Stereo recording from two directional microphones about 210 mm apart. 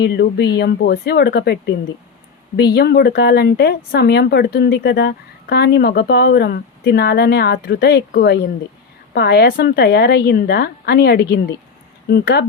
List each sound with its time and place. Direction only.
0.0 s speech: 50° left (ahead or behind)